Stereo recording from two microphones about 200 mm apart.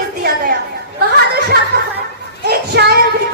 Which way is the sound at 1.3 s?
55° right (ahead or behind).